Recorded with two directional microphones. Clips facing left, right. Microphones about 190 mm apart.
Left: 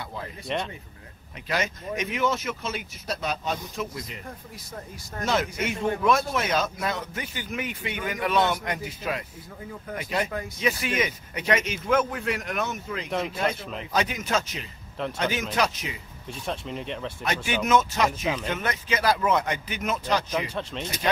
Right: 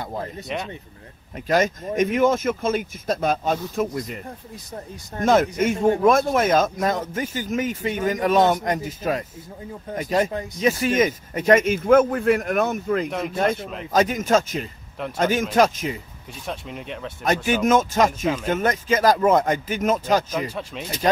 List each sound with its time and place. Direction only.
0.0 s speech: 45° right (ahead or behind)
0.5 s speech: 5° right (ahead or behind)
1.3 s a man's voice: 45° right (ahead or behind)
5.2 s a man's voice: 50° right (ahead or behind)
13.6 s speech: centre (ahead or behind)
13.9 s a man's voice: 45° right (ahead or behind)
16.3 s speech: 5° right (ahead or behind)
17.2 s a man's voice: 45° right (ahead or behind)
20.5 s speech: 5° right (ahead or behind)